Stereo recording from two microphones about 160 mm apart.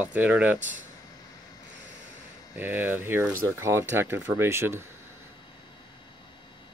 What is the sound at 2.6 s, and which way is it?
Speech, 10° right (ahead or behind).